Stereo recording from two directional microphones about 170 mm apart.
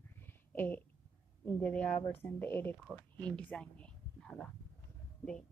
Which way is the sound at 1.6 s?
5° left (ahead or behind).